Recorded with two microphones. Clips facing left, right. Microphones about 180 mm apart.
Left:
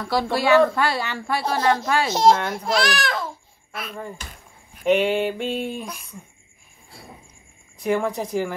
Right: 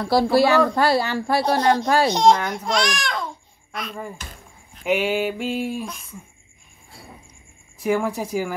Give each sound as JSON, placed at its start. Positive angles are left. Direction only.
{"t": 0.0, "sound": "speech", "side_deg": -35}
{"t": 2.0, "sound": "a child's voice", "side_deg": 5}
{"t": 4.8, "sound": "a sound", "side_deg": -5}
{"t": 7.8, "sound": "speech", "side_deg": -5}